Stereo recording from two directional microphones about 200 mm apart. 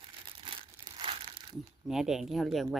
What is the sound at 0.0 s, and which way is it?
Crumpling, 25° right (ahead or behind).